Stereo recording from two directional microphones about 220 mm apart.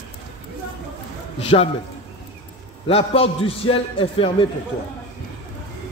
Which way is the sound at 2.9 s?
25° left (ahead or behind).